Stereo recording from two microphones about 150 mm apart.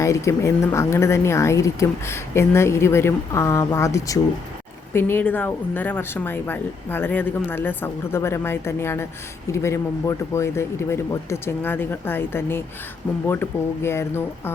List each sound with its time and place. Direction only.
0.0 s a woman's voice: 20° left (ahead or behind)